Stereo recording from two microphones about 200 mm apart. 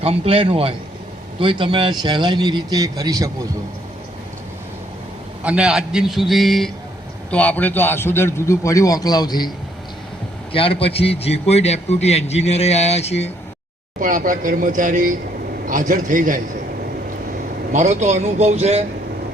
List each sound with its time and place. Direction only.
0.0 s speech: 30° right (ahead or behind)
5.4 s a man's voice: 5° right (ahead or behind); by 9.5 s 20° left (ahead or behind)
10.5 s a man's voice: 25° left (ahead or behind)
14.0 s speech: 40° right (ahead or behind)
17.7 s speech: 35° right (ahead or behind)